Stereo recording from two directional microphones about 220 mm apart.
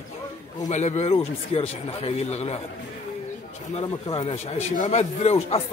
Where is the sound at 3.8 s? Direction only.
25° left (ahead or behind).